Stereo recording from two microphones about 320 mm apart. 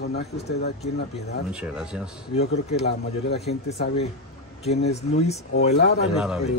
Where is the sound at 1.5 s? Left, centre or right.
Centre.